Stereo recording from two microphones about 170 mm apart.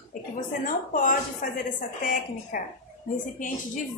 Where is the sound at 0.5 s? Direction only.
50° left (ahead or behind).